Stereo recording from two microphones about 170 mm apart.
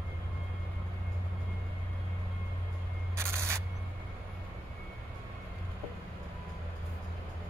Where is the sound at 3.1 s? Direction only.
15° right (ahead or behind).